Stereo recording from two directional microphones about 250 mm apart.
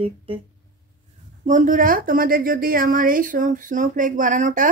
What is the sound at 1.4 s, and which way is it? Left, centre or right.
A woman's voice, right.